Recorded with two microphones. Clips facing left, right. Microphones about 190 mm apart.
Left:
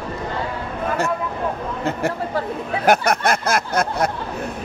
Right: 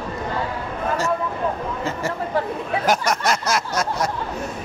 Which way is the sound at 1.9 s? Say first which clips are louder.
Left 5 dB; 60° left (ahead or behind).